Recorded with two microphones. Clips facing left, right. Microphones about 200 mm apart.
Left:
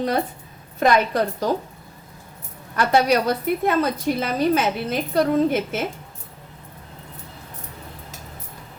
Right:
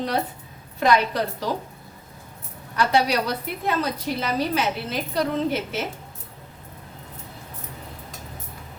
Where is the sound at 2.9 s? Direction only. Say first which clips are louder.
Left 5 dB; 50° left (ahead or behind).